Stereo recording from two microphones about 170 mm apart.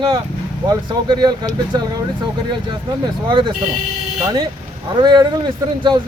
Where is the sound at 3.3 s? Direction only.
25° right (ahead or behind).